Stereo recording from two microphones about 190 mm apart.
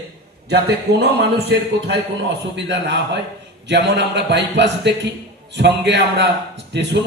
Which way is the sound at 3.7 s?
65° right (ahead or behind).